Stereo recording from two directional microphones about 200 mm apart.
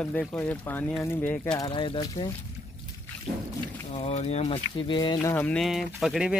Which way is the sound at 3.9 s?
30° left (ahead or behind).